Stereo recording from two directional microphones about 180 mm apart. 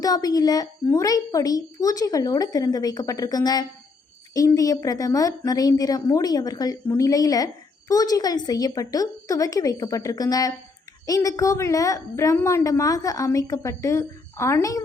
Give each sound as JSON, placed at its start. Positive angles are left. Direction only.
{"t": 0.0, "sound": "a woman's voice", "side_deg": 20}